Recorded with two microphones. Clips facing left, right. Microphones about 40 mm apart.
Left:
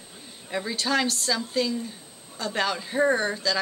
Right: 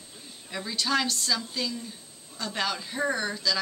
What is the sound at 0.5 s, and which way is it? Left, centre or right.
Speech, centre.